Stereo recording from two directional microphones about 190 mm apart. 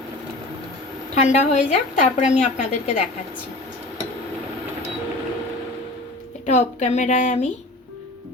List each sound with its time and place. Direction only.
1.1 s a woman's voice: 40° left (ahead or behind)
6.4 s a woman's voice: 40° left (ahead or behind)